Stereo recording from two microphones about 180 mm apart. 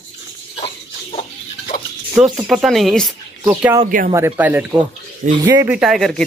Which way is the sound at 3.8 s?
50° right (ahead or behind).